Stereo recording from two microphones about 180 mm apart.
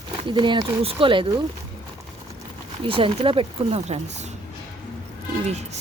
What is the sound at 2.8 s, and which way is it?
Speech, 30° right (ahead or behind).